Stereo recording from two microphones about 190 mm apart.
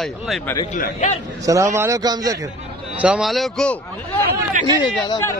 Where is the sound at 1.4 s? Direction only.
15° right (ahead or behind).